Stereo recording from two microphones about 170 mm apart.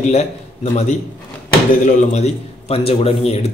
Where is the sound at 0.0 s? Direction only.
40° left (ahead or behind).